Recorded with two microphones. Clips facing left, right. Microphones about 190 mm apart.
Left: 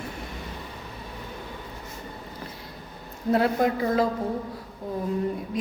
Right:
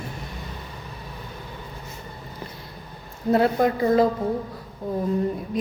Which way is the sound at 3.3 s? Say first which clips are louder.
Right 3 dB; centre (ahead or behind).